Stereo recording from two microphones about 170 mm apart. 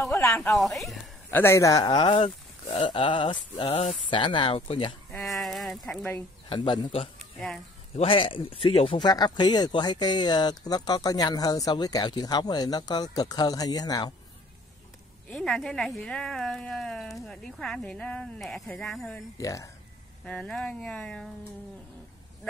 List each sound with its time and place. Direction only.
0.0 s speech: 15° left (ahead or behind)
0.6 s speech: centre (ahead or behind)
1.3 s speech: 15° left (ahead or behind); by 4.9 s 30° left (ahead or behind)
5.2 s a sound: centre (ahead or behind)
6.5 s speech: 25° left (ahead or behind)
7.2 s insect: centre (ahead or behind)
7.9 s speech: 35° left (ahead or behind)
15.2 s speech: 5° left (ahead or behind)
19.3 s speech: 20° left (ahead or behind)
20.2 s speech: 5° left (ahead or behind)